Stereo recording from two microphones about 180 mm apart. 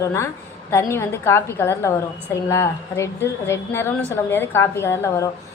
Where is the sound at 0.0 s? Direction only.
15° left (ahead or behind).